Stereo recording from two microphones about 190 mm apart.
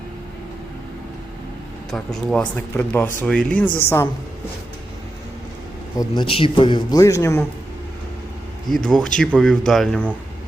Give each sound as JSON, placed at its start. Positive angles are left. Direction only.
{"t": 1.9, "sound": "speech", "side_deg": 5}
{"t": 6.0, "sound": "a man's voice", "side_deg": 25}
{"t": 8.7, "sound": "speech", "side_deg": 0}